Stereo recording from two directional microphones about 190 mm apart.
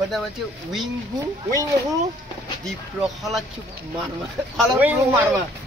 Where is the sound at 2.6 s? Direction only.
Centre (ahead or behind).